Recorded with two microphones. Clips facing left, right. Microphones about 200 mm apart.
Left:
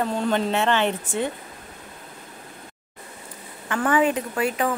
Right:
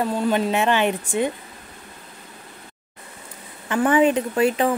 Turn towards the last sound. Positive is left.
turn(degrees=-25)  # may be behind; listen again after turning